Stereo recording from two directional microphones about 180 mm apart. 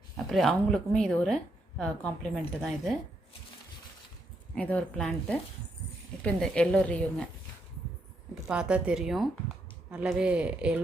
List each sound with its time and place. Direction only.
0.3 s speech: centre (ahead or behind)
4.5 s speech: 5° left (ahead or behind)
8.4 s speech: 5° right (ahead or behind)